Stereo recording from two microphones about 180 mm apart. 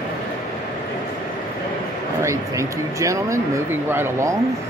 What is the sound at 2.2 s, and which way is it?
Speech, 15° right (ahead or behind).